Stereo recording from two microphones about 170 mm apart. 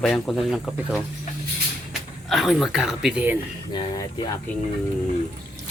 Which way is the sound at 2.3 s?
Centre (ahead or behind).